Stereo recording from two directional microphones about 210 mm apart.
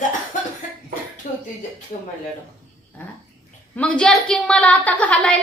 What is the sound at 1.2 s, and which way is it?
Speech, 35° left (ahead or behind).